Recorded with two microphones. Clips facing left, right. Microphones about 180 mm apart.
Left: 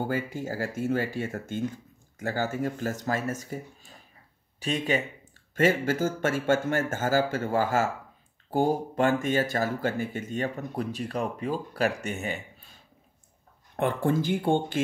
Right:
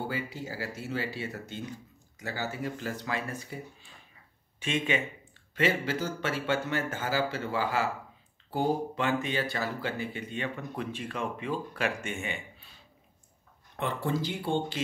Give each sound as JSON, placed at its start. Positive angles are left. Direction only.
{"t": 0.0, "sound": "speech", "side_deg": 50}
{"t": 13.7, "sound": "speech", "side_deg": 50}